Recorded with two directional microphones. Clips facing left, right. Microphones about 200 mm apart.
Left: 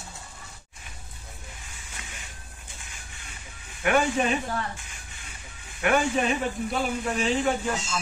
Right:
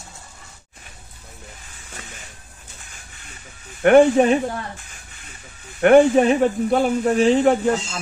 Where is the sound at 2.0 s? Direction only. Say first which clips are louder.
Right 5 dB; 40° right (ahead or behind).